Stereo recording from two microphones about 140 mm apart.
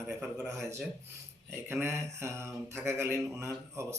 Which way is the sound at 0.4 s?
20° right (ahead or behind).